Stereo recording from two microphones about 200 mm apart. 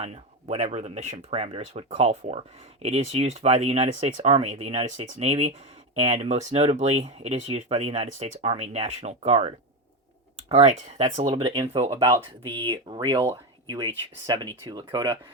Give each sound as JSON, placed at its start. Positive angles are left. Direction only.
{"t": 0.0, "sound": "speech", "side_deg": -35}